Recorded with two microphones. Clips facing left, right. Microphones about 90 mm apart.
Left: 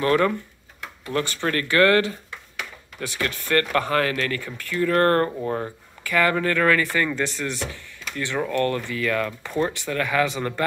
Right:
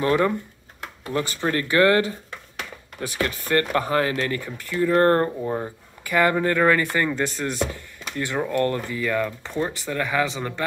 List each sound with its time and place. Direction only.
0.0 s speech: 20° right (ahead or behind)
3.2 s speech: 30° right (ahead or behind)
5.3 s speech: 5° right (ahead or behind)
6.1 s speech: 20° right (ahead or behind)
9.5 s speech: centre (ahead or behind)
10.2 s speech: 15° right (ahead or behind)